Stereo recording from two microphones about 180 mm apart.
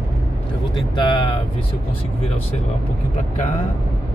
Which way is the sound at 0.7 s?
25° left (ahead or behind).